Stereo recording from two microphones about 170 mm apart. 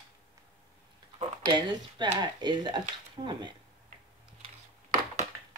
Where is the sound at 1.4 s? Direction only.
25° right (ahead or behind).